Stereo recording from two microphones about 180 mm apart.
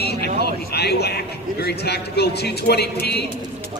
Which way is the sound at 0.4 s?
65° left (ahead or behind).